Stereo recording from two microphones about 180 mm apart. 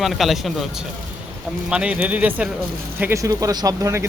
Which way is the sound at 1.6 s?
5° right (ahead or behind).